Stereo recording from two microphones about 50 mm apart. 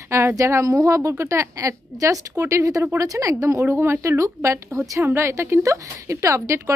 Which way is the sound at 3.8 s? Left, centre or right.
Right.